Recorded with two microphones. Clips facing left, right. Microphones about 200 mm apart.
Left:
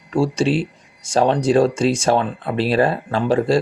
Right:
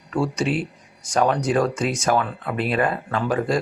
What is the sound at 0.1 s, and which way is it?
Speech, 30° left (ahead or behind).